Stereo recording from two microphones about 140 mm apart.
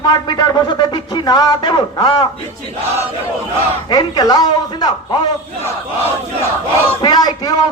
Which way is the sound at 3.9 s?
30° left (ahead or behind).